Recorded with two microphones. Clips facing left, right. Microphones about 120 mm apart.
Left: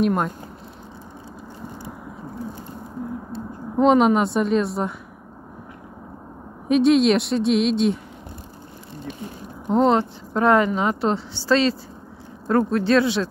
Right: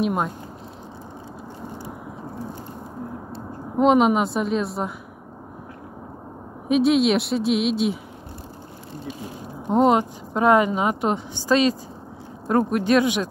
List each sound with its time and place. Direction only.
0.0 s a woman's voice: centre (ahead or behind)
3.7 s a woman's voice: 5° right (ahead or behind)
6.7 s a woman's voice: centre (ahead or behind)
9.7 s a woman's voice: 15° right (ahead or behind)